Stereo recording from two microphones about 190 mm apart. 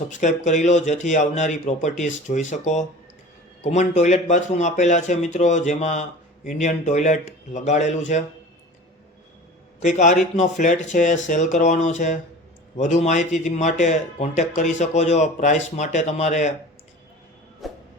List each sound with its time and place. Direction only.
0.1 s speech: 40° left (ahead or behind)
9.8 s speech: 40° left (ahead or behind)
17.6 s a sound: centre (ahead or behind)